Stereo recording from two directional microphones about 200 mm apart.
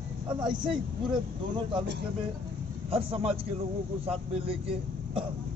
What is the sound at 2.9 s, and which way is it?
Speech, 30° right (ahead or behind).